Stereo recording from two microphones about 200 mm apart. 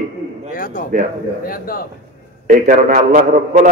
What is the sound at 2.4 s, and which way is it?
A man's voice, 40° right (ahead or behind).